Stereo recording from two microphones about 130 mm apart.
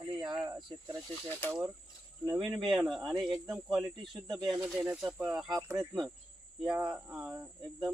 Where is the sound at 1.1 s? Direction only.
15° left (ahead or behind).